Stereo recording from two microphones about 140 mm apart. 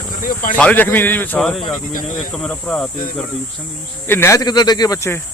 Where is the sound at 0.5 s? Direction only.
10° left (ahead or behind).